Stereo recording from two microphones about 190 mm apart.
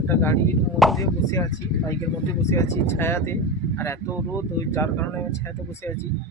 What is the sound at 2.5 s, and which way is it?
Speech, 15° left (ahead or behind).